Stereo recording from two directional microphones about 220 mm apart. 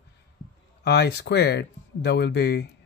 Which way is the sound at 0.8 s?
50° left (ahead or behind).